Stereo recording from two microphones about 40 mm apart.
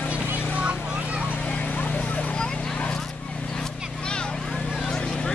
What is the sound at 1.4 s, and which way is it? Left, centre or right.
Vehicle, left.